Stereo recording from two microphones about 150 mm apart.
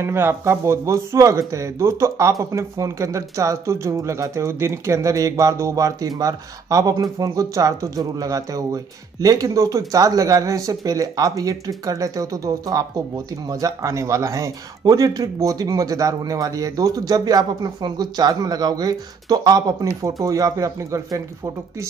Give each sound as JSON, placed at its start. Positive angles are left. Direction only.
{"t": 0.0, "sound": "speech", "side_deg": -15}